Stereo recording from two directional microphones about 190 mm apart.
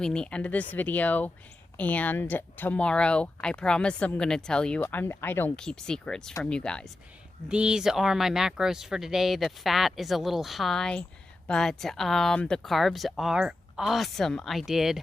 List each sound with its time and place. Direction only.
0.0 s speech: 5° left (ahead or behind)